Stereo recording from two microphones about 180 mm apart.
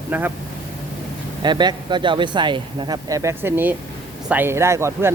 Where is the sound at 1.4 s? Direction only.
25° right (ahead or behind).